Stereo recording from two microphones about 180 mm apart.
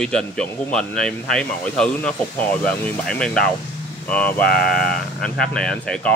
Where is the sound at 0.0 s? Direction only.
5° left (ahead or behind).